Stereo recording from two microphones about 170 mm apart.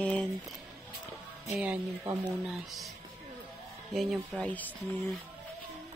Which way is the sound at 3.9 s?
Centre (ahead or behind).